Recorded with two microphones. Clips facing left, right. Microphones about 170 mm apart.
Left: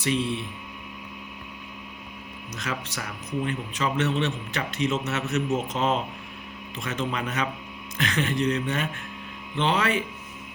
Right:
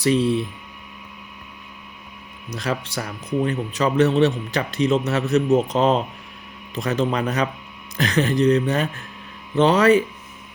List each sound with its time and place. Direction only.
0.0 s a man's voice: 35° right (ahead or behind)
2.5 s a man's voice: 35° right (ahead or behind)